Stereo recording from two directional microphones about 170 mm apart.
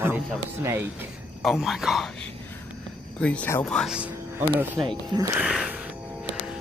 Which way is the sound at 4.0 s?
10° right (ahead or behind).